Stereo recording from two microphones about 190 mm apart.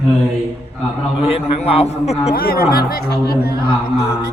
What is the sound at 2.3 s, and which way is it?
Speech, 50° left (ahead or behind).